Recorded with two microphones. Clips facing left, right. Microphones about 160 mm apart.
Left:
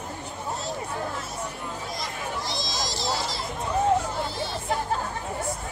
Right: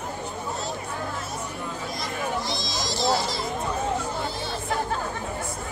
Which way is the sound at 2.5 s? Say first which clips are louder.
Right 1 dB; 60° right (ahead or behind).